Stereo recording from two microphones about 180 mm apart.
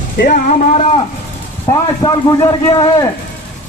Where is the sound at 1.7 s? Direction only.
20° left (ahead or behind).